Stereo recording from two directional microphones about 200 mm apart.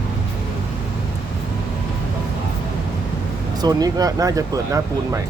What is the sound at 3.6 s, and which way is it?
Speech, 20° right (ahead or behind).